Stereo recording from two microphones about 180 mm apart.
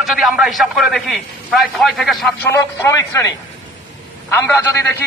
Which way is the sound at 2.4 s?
15° left (ahead or behind).